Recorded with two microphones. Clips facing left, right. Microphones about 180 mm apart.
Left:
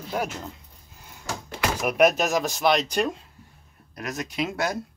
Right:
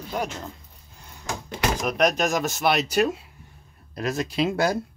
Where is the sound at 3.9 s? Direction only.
30° right (ahead or behind).